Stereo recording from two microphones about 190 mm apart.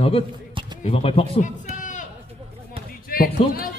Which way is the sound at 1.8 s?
40° left (ahead or behind).